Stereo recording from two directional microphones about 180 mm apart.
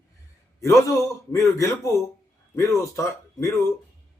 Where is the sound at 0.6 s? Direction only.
15° left (ahead or behind).